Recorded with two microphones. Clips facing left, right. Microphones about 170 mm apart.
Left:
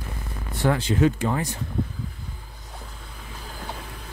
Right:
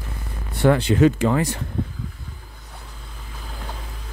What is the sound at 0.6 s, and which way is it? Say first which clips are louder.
Speech: right 5 dB; 65° right (ahead or behind).